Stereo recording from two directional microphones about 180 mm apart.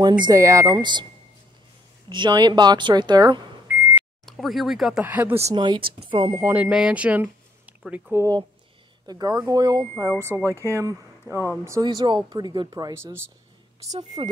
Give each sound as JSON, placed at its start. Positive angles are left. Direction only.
{"t": 0.3, "sound": "a woman's voice", "side_deg": -15}
{"t": 2.0, "sound": "a woman's voice", "side_deg": -25}
{"t": 4.3, "sound": "speech", "side_deg": 0}
{"t": 5.6, "sound": "a woman's voice", "side_deg": -25}
{"t": 6.3, "sound": "a woman's voice", "side_deg": -10}